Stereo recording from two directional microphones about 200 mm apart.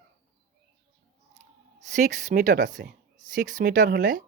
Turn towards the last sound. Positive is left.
turn(degrees=-45)  # may be behind; listen again after turning